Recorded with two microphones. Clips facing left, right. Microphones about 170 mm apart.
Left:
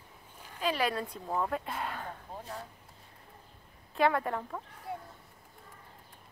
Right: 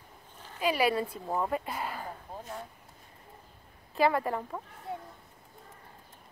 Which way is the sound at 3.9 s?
5° right (ahead or behind).